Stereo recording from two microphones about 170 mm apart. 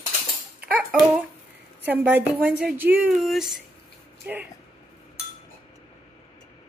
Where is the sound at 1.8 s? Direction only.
10° right (ahead or behind).